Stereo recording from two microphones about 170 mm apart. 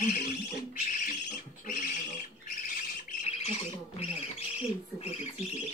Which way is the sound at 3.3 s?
35° left (ahead or behind).